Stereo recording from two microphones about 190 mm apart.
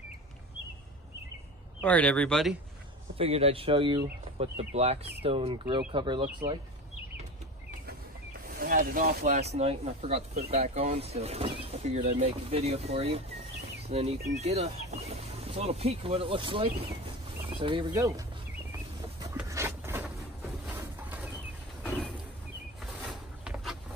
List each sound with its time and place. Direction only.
1.8 s speech: 5° left (ahead or behind)
3.2 s speech: 30° right (ahead or behind)
7.8 s speech: 50° right (ahead or behind); by 18.2 s 20° right (ahead or behind)
19.3 s a sound: 15° right (ahead or behind)
23.0 s vehicle: 5° right (ahead or behind)